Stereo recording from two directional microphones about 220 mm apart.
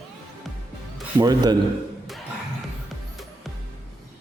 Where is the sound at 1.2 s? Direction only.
20° right (ahead or behind).